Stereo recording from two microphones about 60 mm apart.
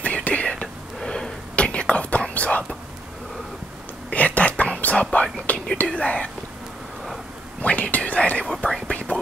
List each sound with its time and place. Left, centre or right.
0.0 s whispering: left
4.1 s whispering: left
5.1 s speech: left
7.6 s speech: left
8.6 s speech: centre
8.9 s speech: centre